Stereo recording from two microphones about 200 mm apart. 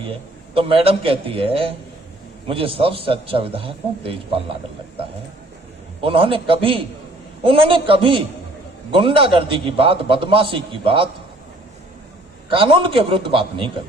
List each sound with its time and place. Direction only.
0.5 s a man's voice: 25° right (ahead or behind)
6.0 s a man's voice: 25° right (ahead or behind)
12.5 s a man's voice: 25° right (ahead or behind)